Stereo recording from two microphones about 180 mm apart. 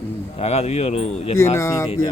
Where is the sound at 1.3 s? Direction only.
15° left (ahead or behind).